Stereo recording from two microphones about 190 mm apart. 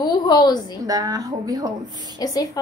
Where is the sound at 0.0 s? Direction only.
20° left (ahead or behind).